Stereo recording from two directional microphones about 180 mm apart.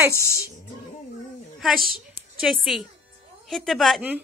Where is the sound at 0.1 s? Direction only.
15° left (ahead or behind).